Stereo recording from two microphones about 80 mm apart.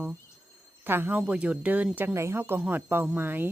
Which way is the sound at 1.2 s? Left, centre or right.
Centre.